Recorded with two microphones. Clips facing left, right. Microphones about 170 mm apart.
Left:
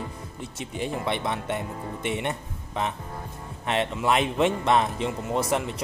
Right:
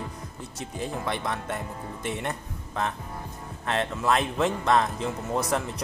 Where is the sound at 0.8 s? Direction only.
25° left (ahead or behind).